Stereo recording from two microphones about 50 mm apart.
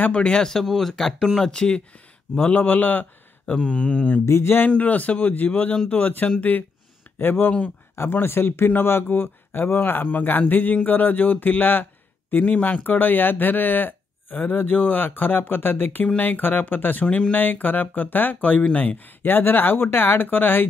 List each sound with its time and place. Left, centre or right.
0.0 s speech: left
2.5 s a man's voice: left
3.5 s a man's voice: left
4.3 s speech: left
4.6 s a man's voice: left